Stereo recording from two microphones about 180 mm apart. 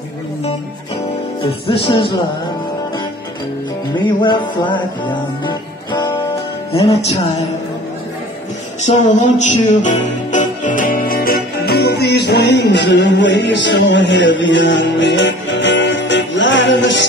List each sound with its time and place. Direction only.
1.4 s music: 30° left (ahead or behind)
3.9 s music: 25° left (ahead or behind)
8.8 s music: 40° left (ahead or behind); by 17.0 s 85° left